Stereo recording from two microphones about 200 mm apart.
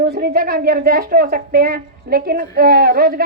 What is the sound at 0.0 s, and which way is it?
Speech, 50° right (ahead or behind).